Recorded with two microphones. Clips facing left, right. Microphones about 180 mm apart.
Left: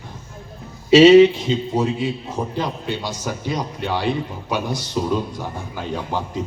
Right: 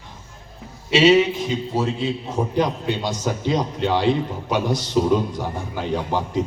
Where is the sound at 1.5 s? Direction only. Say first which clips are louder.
Left 2 dB; 20° left (ahead or behind).